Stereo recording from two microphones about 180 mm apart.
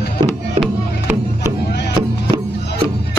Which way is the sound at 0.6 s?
10° right (ahead or behind).